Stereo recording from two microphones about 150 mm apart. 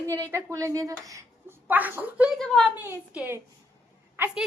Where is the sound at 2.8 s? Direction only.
10° right (ahead or behind).